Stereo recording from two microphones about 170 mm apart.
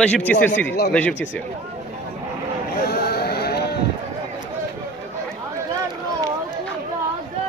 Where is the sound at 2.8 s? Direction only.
65° left (ahead or behind).